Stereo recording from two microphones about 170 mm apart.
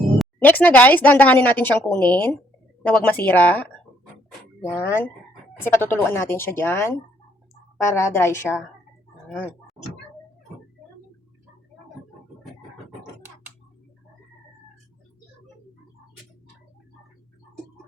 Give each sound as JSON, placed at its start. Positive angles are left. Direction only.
{"t": 0.3, "sound": "speech", "side_deg": 10}
{"t": 4.8, "sound": "speech", "side_deg": 15}
{"t": 9.4, "sound": "a sound", "side_deg": -5}